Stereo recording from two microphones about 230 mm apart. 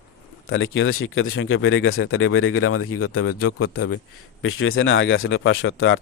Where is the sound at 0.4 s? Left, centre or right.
Left.